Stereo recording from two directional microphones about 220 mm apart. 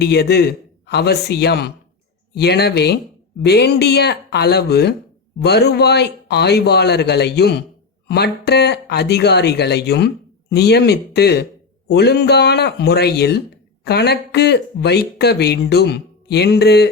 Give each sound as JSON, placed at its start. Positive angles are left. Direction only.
{"t": 0.0, "sound": "speech", "side_deg": 50}